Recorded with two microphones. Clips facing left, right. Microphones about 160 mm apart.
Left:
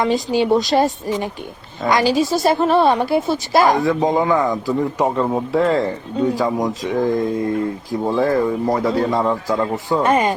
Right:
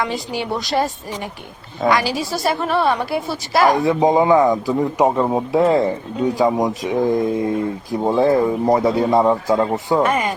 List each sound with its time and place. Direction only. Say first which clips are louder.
0.0 s a woman's voice: left 6 dB; 20° left (ahead or behind)
1.9 s a woman's voice: left 4 dB; 20° left (ahead or behind)
3.8 s speech: right 2 dB; 20° right (ahead or behind)
10.0 s a woman's voice: left 6 dB; 25° left (ahead or behind)